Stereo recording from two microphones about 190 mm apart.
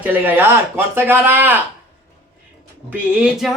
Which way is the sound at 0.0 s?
10° right (ahead or behind).